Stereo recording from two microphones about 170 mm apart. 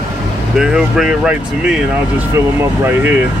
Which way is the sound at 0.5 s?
5° right (ahead or behind).